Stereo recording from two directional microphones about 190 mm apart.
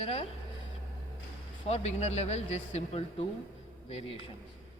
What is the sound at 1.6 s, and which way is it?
A man's voice, 35° left (ahead or behind).